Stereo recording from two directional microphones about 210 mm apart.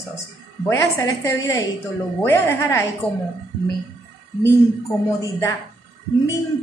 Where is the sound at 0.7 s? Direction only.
10° left (ahead or behind).